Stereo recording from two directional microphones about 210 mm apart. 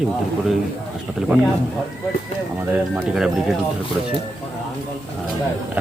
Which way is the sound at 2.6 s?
5° right (ahead or behind).